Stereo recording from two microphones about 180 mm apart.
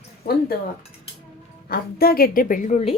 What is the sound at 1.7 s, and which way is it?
A woman's voice, 55° left (ahead or behind).